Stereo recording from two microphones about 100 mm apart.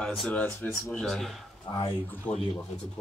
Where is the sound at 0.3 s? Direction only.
15° left (ahead or behind).